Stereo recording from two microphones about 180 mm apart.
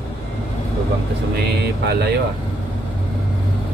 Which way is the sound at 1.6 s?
65° right (ahead or behind).